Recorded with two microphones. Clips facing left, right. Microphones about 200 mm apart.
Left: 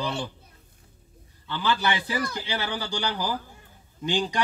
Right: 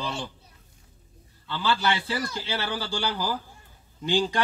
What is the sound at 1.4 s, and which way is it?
A man's voice, 15° left (ahead or behind).